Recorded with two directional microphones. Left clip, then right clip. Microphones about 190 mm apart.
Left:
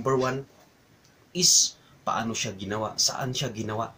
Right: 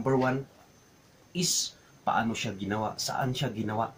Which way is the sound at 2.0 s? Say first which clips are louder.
Even; 5° right (ahead or behind).